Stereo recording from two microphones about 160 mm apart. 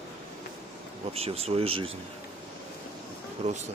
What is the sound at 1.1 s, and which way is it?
Speech, 40° right (ahead or behind).